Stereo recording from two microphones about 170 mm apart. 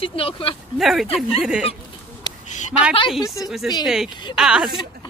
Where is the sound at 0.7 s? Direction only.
Centre (ahead or behind).